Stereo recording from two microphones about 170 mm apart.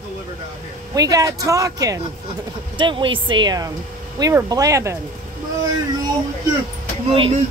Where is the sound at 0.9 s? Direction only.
20° right (ahead or behind).